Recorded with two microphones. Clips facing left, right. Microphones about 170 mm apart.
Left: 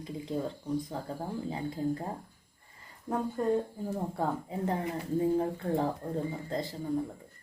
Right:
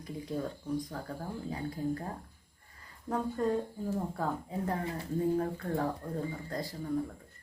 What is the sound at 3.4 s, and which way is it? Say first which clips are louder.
Speech: left 2 dB; 10° left (ahead or behind).